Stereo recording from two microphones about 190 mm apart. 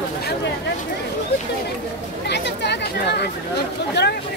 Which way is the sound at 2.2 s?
65° left (ahead or behind).